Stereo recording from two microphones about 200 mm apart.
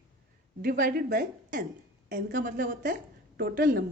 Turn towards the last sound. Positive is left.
turn(degrees=-45)  # may be behind; listen again after turning